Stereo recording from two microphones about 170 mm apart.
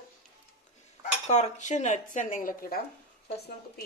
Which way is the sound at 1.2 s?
40° left (ahead or behind).